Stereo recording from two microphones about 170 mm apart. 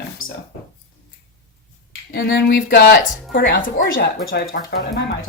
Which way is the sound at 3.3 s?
55° left (ahead or behind).